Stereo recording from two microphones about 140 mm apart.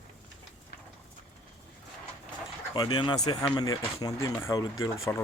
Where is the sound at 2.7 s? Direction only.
35° left (ahead or behind).